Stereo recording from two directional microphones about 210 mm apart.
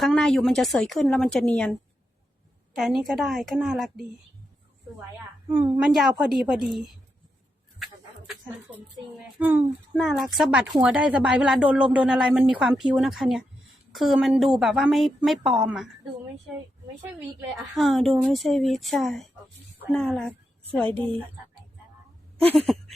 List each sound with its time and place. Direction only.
0.0 s a woman's voice: centre (ahead or behind)
2.7 s a woman's voice: centre (ahead or behind)
5.5 s a woman's voice: 20° right (ahead or behind)
5.7 s a woman's voice: 5° right (ahead or behind)
9.4 s a woman's voice: 5° right (ahead or behind)
17.5 s a woman's voice: centre (ahead or behind)
20.8 s a woman's voice: 30° right (ahead or behind)
22.4 s a woman's voice: 5° left (ahead or behind)